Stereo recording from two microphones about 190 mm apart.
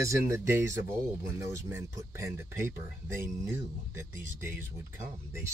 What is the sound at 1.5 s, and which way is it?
Speech, 15° right (ahead or behind).